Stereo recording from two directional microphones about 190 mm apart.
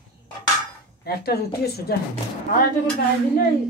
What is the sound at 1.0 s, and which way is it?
Speech, 55° left (ahead or behind).